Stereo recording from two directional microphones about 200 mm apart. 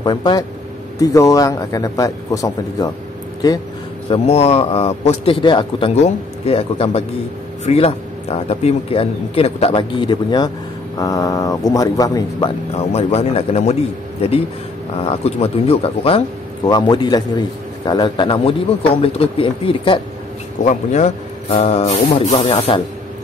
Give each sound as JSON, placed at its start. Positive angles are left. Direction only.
{"t": 0.0, "sound": "a man's voice", "side_deg": 20}
{"t": 4.1, "sound": "speech", "side_deg": 30}